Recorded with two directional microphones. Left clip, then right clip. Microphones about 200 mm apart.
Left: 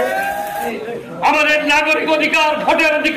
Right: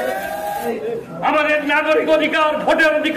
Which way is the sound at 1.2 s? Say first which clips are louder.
Left 3 dB; 5° left (ahead or behind).